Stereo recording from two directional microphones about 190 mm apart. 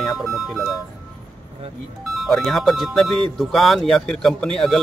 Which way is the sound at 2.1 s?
Centre (ahead or behind).